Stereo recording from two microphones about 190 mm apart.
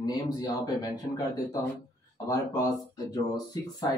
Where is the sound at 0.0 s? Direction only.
20° left (ahead or behind).